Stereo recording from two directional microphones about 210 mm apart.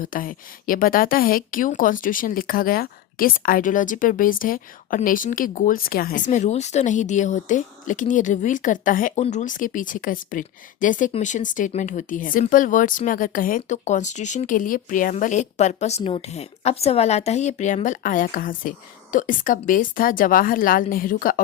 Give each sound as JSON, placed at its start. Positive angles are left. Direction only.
{"t": 0.0, "sound": "speech", "side_deg": 40}